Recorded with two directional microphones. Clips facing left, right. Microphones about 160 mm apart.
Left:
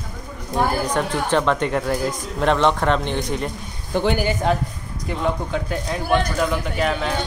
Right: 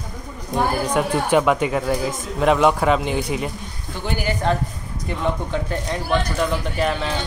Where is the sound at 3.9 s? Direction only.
50° left (ahead or behind).